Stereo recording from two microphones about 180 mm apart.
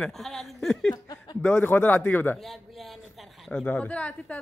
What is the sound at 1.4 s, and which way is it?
A man's voice, 10° left (ahead or behind).